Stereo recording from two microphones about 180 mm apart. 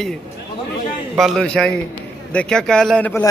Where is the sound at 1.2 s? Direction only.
5° left (ahead or behind).